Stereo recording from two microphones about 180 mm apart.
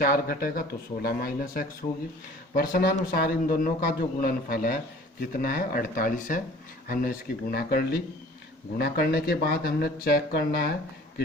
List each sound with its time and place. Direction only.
0.0 s a man's voice: 55° left (ahead or behind)